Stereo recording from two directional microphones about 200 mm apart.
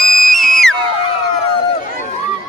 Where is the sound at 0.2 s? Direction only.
Centre (ahead or behind).